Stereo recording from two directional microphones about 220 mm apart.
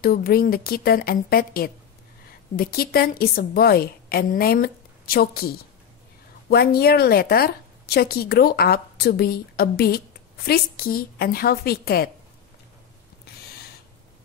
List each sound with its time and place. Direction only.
0.0 s a woman's voice: 45° left (ahead or behind)
6.5 s a woman's voice: 45° left (ahead or behind)